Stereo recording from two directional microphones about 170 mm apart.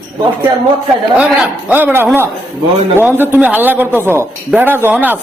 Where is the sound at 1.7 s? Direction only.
10° right (ahead or behind).